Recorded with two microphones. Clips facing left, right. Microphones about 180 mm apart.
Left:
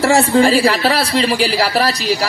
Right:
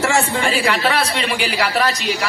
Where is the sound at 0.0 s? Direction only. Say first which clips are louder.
Left 7 dB; 35° left (ahead or behind).